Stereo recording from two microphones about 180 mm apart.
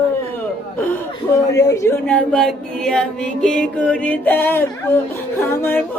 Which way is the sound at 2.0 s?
5° left (ahead or behind).